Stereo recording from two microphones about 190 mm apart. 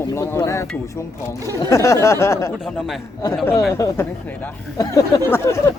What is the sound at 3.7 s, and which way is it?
Speech, 15° left (ahead or behind).